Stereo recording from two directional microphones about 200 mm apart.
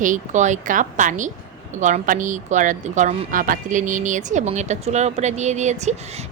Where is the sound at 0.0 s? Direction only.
40° right (ahead or behind).